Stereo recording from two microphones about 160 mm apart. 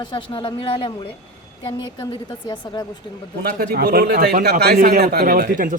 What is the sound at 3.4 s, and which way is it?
A man's voice, 75° right (ahead or behind).